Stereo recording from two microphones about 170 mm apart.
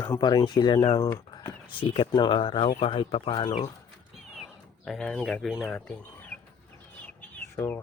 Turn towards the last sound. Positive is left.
turn(degrees=10)  # may be behind; listen again after turning